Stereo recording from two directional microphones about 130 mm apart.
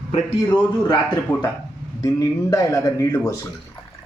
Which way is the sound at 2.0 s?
25° left (ahead or behind).